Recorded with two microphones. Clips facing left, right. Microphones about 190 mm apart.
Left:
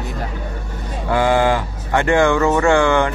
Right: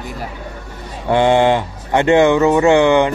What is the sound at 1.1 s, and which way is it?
Speech, 25° right (ahead or behind).